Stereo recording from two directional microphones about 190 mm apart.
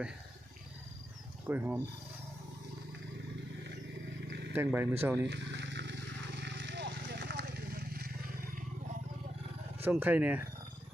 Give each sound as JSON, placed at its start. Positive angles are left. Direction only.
{"t": 1.5, "sound": "speech", "side_deg": -10}
{"t": 4.3, "sound": "wild animals", "side_deg": -65}
{"t": 4.5, "sound": "speech", "side_deg": -10}
{"t": 5.2, "sound": "vehicle", "side_deg": -65}
{"t": 9.8, "sound": "speech", "side_deg": -10}